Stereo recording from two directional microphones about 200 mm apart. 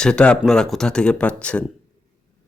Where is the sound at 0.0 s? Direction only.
5° left (ahead or behind).